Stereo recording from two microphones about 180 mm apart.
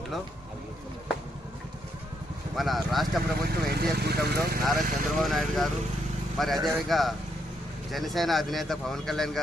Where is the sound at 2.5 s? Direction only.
Centre (ahead or behind).